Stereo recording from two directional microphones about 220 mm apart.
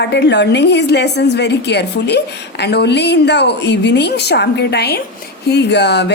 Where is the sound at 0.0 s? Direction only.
50° left (ahead or behind).